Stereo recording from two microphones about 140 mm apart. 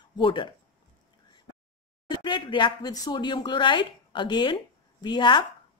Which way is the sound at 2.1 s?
35° left (ahead or behind).